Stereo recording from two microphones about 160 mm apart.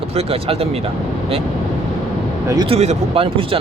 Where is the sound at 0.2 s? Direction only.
40° right (ahead or behind).